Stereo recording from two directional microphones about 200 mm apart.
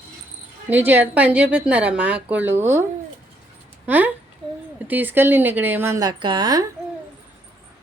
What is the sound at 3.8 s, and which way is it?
Speech, 10° right (ahead or behind).